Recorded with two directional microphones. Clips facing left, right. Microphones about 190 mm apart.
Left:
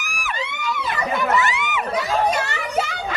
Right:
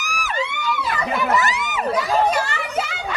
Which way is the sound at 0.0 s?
40° right (ahead or behind).